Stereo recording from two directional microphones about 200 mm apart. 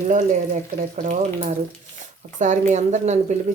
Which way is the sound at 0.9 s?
40° right (ahead or behind).